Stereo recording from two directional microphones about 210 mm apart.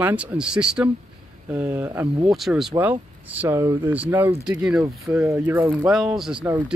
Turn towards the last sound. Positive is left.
turn(degrees=-5)  # may be behind; listen again after turning